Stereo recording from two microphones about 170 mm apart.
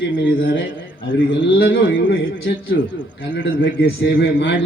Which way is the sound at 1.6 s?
85° left.